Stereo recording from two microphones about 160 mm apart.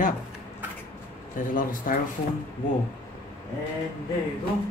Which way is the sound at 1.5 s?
60° left (ahead or behind).